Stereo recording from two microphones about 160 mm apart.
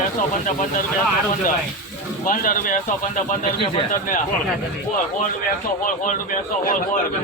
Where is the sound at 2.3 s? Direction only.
55° left (ahead or behind).